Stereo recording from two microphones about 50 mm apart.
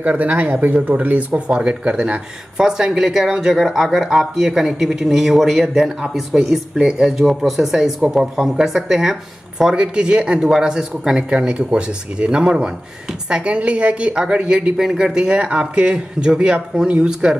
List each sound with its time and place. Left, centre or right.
0.0 s a man's voice: right; by 17.4 s centre